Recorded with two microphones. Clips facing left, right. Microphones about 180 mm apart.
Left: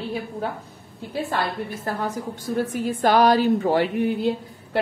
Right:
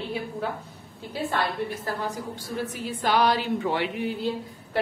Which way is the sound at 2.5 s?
45° left (ahead or behind).